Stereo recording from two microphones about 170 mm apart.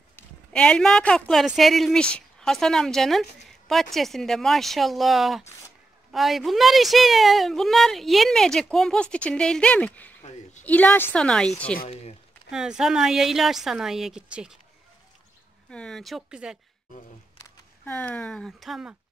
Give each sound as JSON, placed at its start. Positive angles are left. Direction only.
{"t": 0.1, "sound": "speech", "side_deg": 5}
{"t": 3.4, "sound": "a sound", "side_deg": 0}
{"t": 3.9, "sound": "a woman's voice", "side_deg": 0}
{"t": 11.9, "sound": "speech", "side_deg": 40}
{"t": 12.4, "sound": "speech", "side_deg": -5}
{"t": 15.7, "sound": "speech", "side_deg": 5}
{"t": 17.4, "sound": "speech", "side_deg": 10}